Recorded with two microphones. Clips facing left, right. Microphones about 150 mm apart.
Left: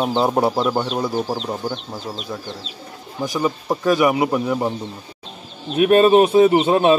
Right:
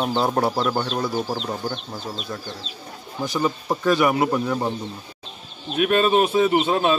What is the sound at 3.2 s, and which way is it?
Speech, 5° left (ahead or behind).